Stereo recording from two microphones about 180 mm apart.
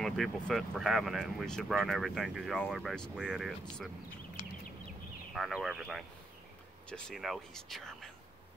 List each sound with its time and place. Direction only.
0.0 s speech: centre (ahead or behind)
5.3 s speech: centre (ahead or behind)